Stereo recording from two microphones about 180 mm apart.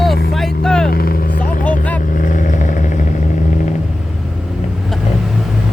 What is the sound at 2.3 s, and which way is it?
Vehicle, 45° left (ahead or behind).